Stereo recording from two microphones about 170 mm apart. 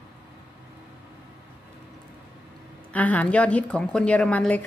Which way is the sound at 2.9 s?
10° left (ahead or behind).